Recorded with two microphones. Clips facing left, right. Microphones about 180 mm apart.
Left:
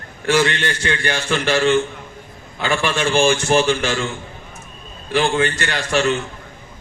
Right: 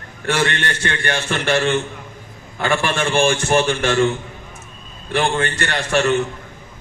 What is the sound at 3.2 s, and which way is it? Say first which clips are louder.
Speech: left 1 dB; 55° right (ahead or behind).